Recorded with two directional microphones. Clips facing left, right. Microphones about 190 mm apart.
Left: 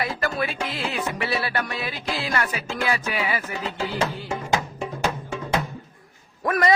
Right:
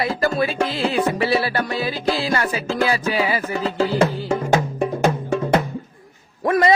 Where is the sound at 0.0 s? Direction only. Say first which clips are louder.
Right 6 dB; 30° right (ahead or behind).